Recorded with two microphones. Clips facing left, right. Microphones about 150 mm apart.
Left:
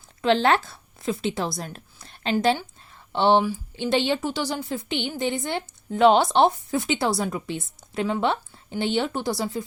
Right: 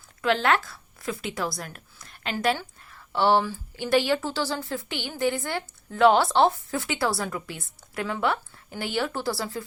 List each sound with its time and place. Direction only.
0.2 s a woman's voice: 30° left (ahead or behind)